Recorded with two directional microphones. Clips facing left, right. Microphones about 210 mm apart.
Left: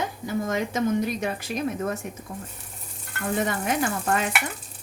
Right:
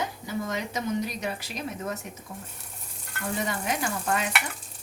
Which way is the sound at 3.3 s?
50° left (ahead or behind).